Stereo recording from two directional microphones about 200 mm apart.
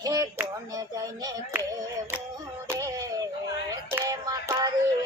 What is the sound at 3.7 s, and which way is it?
Music, 15° right (ahead or behind).